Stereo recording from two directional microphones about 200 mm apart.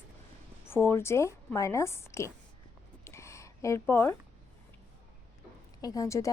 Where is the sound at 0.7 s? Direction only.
10° left (ahead or behind).